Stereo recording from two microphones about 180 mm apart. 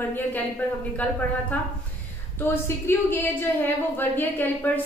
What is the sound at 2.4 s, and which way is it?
A woman's voice, 15° left (ahead or behind).